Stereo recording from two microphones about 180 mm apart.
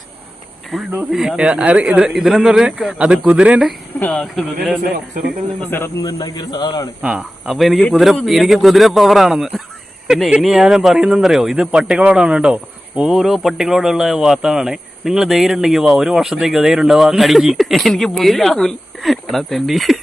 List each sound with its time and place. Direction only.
0.7 s speech: centre (ahead or behind)
5.7 s a man's voice: 15° left (ahead or behind)
7.0 s speech: 5° right (ahead or behind)